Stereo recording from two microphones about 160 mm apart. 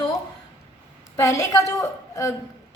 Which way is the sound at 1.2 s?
20° left (ahead or behind).